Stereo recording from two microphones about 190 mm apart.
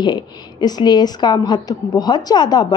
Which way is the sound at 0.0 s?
25° left (ahead or behind).